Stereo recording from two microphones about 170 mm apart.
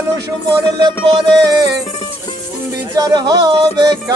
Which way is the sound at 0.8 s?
30° right (ahead or behind).